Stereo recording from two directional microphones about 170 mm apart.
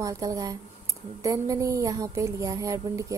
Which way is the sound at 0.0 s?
20° right (ahead or behind).